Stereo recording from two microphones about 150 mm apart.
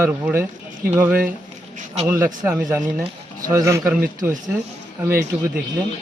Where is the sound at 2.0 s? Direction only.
15° right (ahead or behind).